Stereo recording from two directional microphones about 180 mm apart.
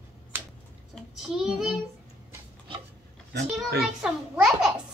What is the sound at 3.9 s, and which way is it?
Speech, centre (ahead or behind).